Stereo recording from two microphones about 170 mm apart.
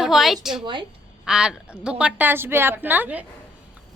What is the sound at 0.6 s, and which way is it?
Speech, 30° right (ahead or behind).